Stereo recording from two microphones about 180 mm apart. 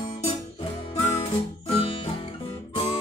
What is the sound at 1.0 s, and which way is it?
Music, 35° left (ahead or behind).